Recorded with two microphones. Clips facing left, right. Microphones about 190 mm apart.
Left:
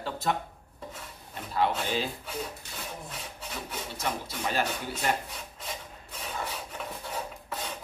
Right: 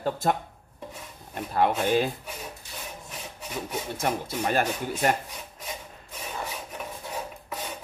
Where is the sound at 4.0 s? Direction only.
50° right (ahead or behind).